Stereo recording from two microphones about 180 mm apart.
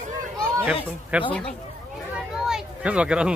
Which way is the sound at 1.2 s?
5° left (ahead or behind).